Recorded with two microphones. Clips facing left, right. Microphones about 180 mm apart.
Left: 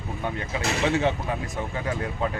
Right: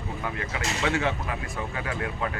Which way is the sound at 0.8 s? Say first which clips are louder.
Left 3 dB; 20° left (ahead or behind).